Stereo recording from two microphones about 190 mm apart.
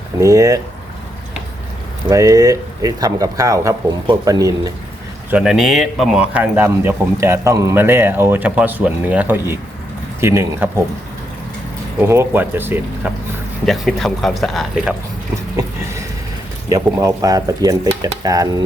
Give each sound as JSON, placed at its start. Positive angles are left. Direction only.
{"t": 0.2, "sound": "speech", "side_deg": -15}
{"t": 2.0, "sound": "speech", "side_deg": -20}
{"t": 5.3, "sound": "speech", "side_deg": -5}
{"t": 11.9, "sound": "speech", "side_deg": -15}
{"t": 13.7, "sound": "speech", "side_deg": 0}
{"t": 15.5, "sound": "a sound", "side_deg": -15}
{"t": 16.6, "sound": "speech", "side_deg": -15}